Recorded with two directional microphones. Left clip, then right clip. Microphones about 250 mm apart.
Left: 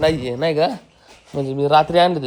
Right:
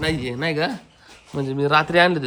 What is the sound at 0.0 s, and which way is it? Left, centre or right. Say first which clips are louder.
Speech: left 6 dB; centre.